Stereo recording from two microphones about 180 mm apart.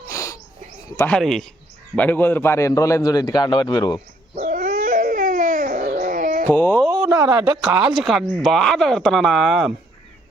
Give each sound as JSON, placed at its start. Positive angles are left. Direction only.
{"t": 0.1, "sound": "wheeze", "side_deg": 15}
{"t": 0.9, "sound": "a man's voice", "side_deg": 10}
{"t": 4.4, "sound": "dog", "side_deg": -55}
{"t": 6.5, "sound": "speech", "side_deg": 10}
{"t": 7.1, "sound": "speech", "side_deg": -25}
{"t": 7.7, "sound": "speech", "side_deg": -5}